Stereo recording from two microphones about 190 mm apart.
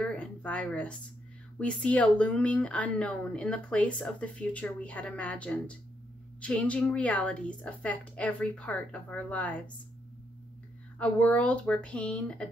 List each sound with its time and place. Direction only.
0.0 s a sound: 5° left (ahead or behind)
1.6 s a woman's voice: 5° left (ahead or behind)
11.0 s a woman's voice: 5° left (ahead or behind)